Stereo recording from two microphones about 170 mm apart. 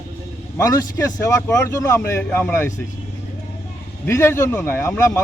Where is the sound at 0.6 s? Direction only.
20° left (ahead or behind).